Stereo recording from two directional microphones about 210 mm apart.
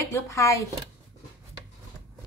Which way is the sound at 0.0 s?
15° left (ahead or behind).